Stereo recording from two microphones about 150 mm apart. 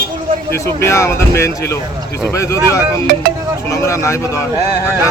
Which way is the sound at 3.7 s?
20° left (ahead or behind).